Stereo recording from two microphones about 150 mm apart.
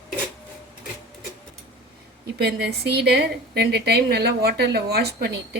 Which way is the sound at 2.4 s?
90° right.